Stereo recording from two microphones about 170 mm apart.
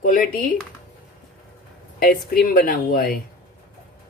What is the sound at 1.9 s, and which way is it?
Speech, 55° left (ahead or behind).